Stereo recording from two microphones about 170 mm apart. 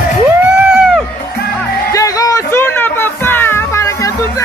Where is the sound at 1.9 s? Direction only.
20° left (ahead or behind).